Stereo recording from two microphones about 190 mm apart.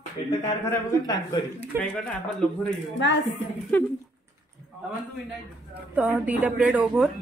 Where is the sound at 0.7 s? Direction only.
20° left (ahead or behind).